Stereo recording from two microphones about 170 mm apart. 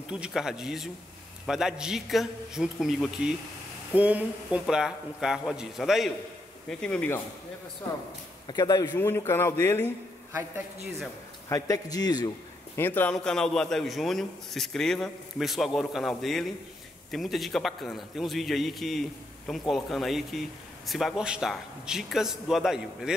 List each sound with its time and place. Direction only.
0.1 s a man's voice: 5° right (ahead or behind)
8.5 s a man's voice: 20° left (ahead or behind)
11.4 s a man's voice: 20° left (ahead or behind)
12.7 s a man's voice: 10° left (ahead or behind)